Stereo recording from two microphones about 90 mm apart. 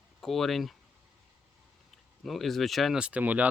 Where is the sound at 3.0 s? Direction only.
15° right (ahead or behind).